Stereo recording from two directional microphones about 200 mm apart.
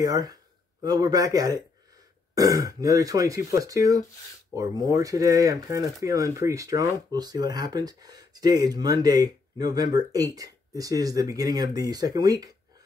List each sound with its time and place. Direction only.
0.0 s speech: 20° right (ahead or behind)